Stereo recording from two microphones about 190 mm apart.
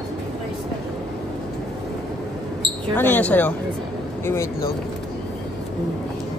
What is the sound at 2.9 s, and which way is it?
Speech, 10° left (ahead or behind).